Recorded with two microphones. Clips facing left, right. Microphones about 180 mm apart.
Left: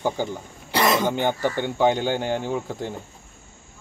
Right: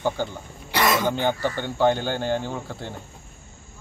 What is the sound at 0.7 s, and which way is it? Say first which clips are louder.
Throat clearing: left 1 dB; 30° left (ahead or behind).